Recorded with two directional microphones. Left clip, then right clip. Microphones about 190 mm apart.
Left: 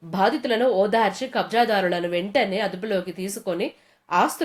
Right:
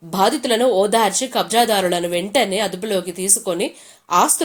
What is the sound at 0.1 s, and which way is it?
A woman's voice, 20° right (ahead or behind).